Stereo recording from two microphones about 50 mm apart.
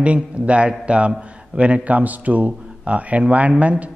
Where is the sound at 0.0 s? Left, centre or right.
Right.